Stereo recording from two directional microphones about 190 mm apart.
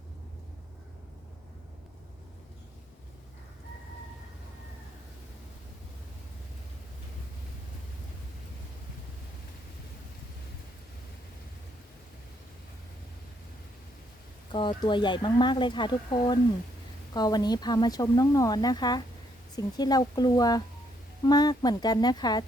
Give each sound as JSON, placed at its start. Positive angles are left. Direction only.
{"t": 14.5, "sound": "speech", "side_deg": 25}